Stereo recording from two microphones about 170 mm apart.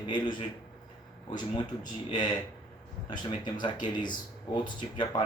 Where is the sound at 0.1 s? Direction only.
25° left (ahead or behind).